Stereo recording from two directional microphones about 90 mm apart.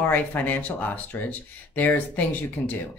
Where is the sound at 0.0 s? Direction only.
20° left (ahead or behind).